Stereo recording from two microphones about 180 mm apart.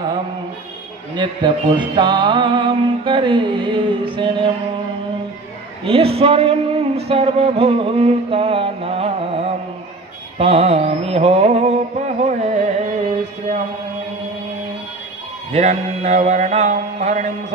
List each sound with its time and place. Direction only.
1.1 s music: 25° right (ahead or behind)
5.9 s a sound: 30° right (ahead or behind)
10.3 s mantra: 35° right (ahead or behind)
12.3 s carnatic music: 40° right (ahead or behind)
15.5 s mantra: 40° right (ahead or behind)